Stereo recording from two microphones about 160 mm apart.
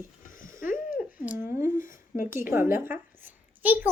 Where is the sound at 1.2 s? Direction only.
15° right (ahead or behind).